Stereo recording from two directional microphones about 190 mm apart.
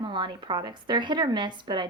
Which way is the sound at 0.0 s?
25° right (ahead or behind).